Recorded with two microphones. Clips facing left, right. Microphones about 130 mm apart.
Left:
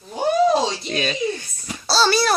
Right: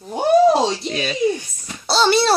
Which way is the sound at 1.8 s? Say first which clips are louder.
Right 2 dB; 20° right (ahead or behind).